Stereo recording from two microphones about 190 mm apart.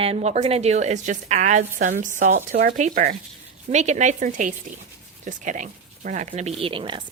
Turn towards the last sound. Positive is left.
turn(degrees=-25)  # may be behind; listen again after turning